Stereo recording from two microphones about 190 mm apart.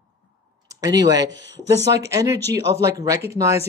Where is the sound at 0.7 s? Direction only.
20° right (ahead or behind).